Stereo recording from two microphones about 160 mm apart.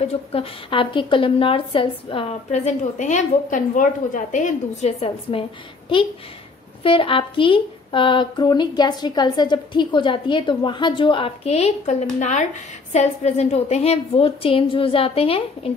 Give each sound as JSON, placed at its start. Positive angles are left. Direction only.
{"t": 0.0, "sound": "a woman's voice", "side_deg": 35}
{"t": 6.8, "sound": "a woman's voice", "side_deg": 35}